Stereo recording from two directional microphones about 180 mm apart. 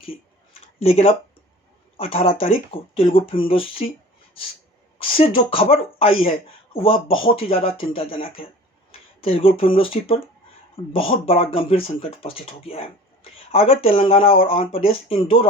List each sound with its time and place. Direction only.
0.8 s speech: 35° left (ahead or behind)
5.1 s speech: 30° left (ahead or behind)